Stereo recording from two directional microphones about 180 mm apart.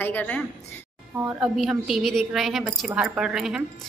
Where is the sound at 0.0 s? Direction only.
10° left (ahead or behind).